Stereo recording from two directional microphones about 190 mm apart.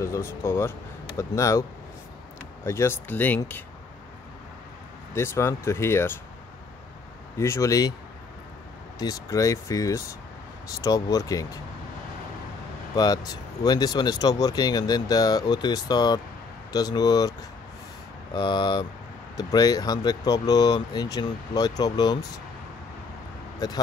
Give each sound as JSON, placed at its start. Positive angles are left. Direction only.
{"t": 0.0, "sound": "speech", "side_deg": 15}
{"t": 5.1, "sound": "speech", "side_deg": 15}
{"t": 7.3, "sound": "speech", "side_deg": 15}
{"t": 8.9, "sound": "speech", "side_deg": 20}
{"t": 12.9, "sound": "speech", "side_deg": 20}